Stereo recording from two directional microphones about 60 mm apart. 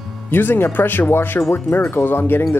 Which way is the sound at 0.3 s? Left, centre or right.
Left.